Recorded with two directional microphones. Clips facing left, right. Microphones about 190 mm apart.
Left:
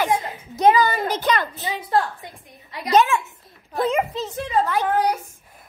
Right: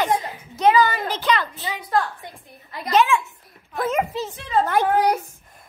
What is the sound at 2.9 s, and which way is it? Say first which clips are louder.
Speech: left 1 dB; 45° left (ahead or behind).